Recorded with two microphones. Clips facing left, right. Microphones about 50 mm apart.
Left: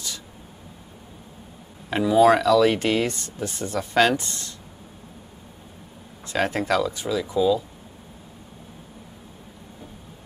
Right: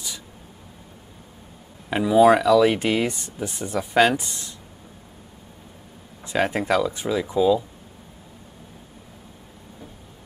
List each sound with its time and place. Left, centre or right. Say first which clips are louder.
1.9 s speech: right 1 dB; centre
6.2 s speech: right 1 dB; centre
6.9 s speech: right 1 dB; right